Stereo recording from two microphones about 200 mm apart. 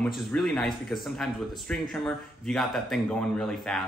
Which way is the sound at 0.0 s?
5° left (ahead or behind).